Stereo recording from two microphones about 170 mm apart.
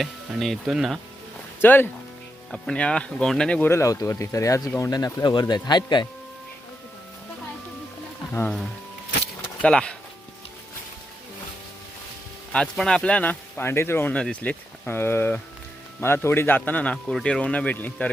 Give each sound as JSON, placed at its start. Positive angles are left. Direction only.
{"t": 0.0, "sound": "speech", "side_deg": 0}
{"t": 1.6, "sound": "speech", "side_deg": 10}
{"t": 8.3, "sound": "speech", "side_deg": 15}
{"t": 9.6, "sound": "speech", "side_deg": 5}
{"t": 12.5, "sound": "speech", "side_deg": 5}